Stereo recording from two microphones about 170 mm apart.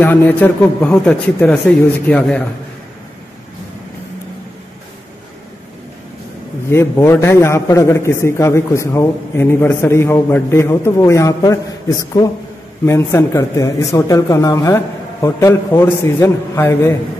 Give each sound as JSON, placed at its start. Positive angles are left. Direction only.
{"t": 0.0, "sound": "a man's voice", "side_deg": 10}
{"t": 6.7, "sound": "a man's voice", "side_deg": 15}